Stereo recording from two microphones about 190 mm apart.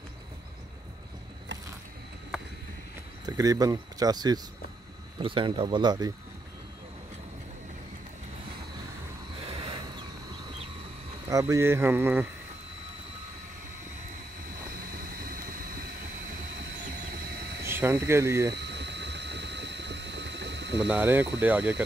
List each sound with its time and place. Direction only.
3.3 s speech: 20° right (ahead or behind)
9.5 s a sound: 30° right (ahead or behind)
11.2 s speech: 15° right (ahead or behind)
17.6 s speech: 15° right (ahead or behind)
18.5 s a sound: 65° right (ahead or behind)
20.9 s speech: 10° right (ahead or behind)